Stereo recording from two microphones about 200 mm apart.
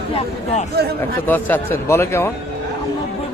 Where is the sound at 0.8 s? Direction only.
55° right (ahead or behind).